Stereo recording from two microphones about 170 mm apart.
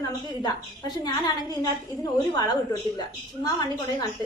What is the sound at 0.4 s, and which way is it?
A woman's voice, 25° left (ahead or behind).